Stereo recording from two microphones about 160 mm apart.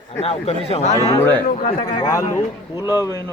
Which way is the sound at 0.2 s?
40° left (ahead or behind).